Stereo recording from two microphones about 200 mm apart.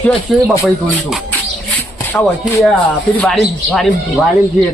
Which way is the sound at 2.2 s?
10° left (ahead or behind).